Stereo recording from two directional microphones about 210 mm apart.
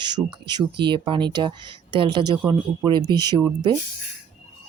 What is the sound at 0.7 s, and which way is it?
Speech, 20° right (ahead or behind).